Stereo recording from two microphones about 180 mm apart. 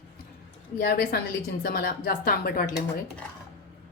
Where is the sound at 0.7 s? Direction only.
55° left (ahead or behind).